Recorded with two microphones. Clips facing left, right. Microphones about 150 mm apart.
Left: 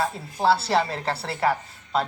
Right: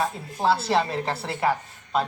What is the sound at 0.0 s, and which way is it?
A woman's voice, 20° right (ahead or behind).